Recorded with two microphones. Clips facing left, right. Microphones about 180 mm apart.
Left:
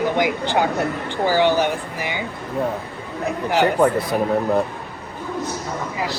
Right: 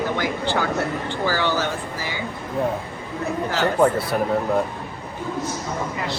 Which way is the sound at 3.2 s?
15° left (ahead or behind).